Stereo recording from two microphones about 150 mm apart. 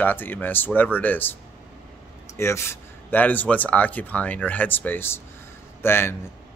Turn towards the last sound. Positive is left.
turn(degrees=15)  # may be behind; listen again after turning